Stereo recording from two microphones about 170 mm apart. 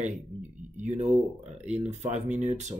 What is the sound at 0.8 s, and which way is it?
Speech, 45° right (ahead or behind).